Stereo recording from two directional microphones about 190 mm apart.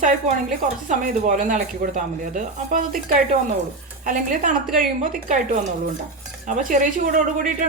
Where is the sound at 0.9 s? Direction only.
45° right (ahead or behind).